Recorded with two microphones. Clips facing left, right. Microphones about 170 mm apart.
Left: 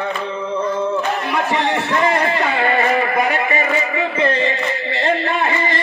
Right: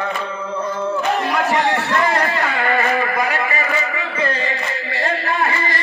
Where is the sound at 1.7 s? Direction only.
20° left (ahead or behind).